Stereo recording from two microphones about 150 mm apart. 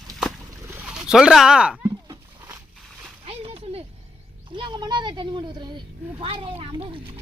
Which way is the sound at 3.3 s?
40° right (ahead or behind).